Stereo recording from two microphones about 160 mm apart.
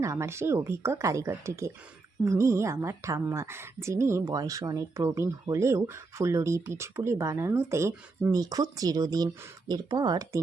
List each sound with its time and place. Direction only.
0.0 s a woman's voice: 20° right (ahead or behind)